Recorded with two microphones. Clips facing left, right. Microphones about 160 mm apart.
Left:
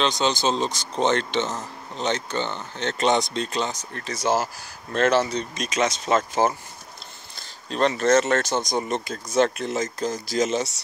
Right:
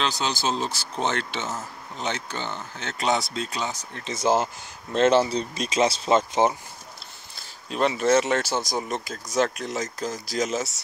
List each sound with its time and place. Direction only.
0.0 s speech: 5° right (ahead or behind)
4.0 s speech: 25° right (ahead or behind)
7.7 s speech: 10° right (ahead or behind)